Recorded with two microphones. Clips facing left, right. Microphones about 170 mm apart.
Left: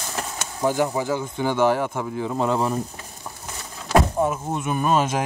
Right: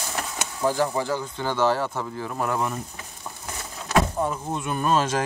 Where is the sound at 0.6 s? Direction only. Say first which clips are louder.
Left 2 dB; 15° left (ahead or behind).